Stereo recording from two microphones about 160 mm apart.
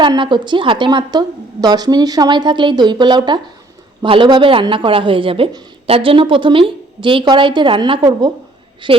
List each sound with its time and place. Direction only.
0.0 s a woman's voice: 30° right (ahead or behind)